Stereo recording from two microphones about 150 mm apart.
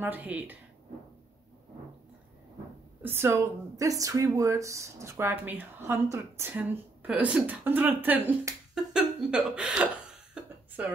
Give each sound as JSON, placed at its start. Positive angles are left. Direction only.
{"t": 0.0, "sound": "speech", "side_deg": -10}
{"t": 3.0, "sound": "speech", "side_deg": -15}